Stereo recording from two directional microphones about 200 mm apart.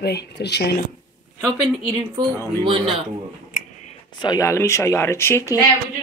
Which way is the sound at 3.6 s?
45° left (ahead or behind).